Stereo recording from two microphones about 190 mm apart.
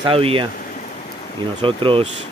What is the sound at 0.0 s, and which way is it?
Speech, 30° right (ahead or behind).